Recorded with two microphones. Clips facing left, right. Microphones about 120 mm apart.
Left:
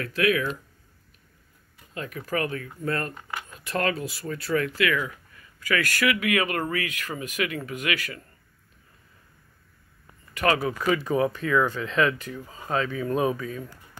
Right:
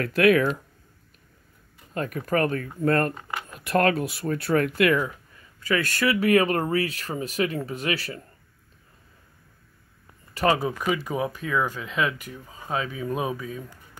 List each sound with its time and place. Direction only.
0.0 s speech: 55° right (ahead or behind)
2.0 s speech: 50° right (ahead or behind)
3.2 s speech: 25° right (ahead or behind)
3.5 s speech: 55° right (ahead or behind)
5.6 s speech: 25° right (ahead or behind)
10.3 s speech: 25° right (ahead or behind)
10.9 s speech: 10° right (ahead or behind)